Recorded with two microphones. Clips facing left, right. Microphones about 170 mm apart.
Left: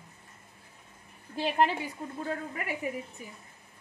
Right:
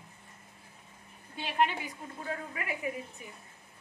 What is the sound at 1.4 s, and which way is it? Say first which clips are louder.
Speech: left 3 dB; 35° left (ahead or behind).